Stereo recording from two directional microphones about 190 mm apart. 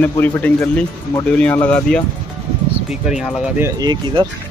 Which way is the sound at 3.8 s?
25° right (ahead or behind).